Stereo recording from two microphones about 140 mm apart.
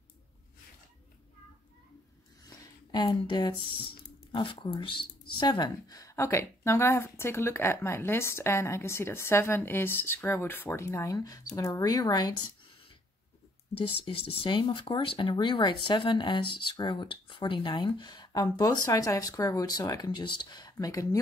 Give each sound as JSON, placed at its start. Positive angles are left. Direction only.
{"t": 2.9, "sound": "speech", "side_deg": 30}
{"t": 13.7, "sound": "speech", "side_deg": 40}